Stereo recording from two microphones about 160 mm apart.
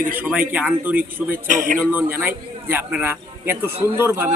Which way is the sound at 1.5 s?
50° right (ahead or behind).